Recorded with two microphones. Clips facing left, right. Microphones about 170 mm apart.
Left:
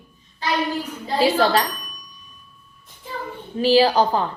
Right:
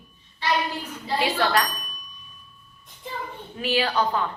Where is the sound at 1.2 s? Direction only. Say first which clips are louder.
Left 6 dB; 30° left (ahead or behind).